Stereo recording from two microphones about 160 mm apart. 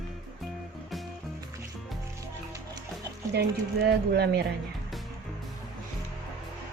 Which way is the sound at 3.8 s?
90° right.